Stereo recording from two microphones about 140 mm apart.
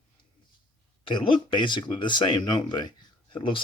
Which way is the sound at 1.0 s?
35° left (ahead or behind).